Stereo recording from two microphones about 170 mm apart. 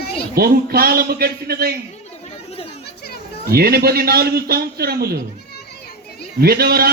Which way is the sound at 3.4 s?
65° right (ahead or behind).